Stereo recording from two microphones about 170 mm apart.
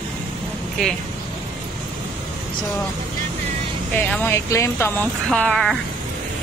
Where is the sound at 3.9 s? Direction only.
10° left (ahead or behind).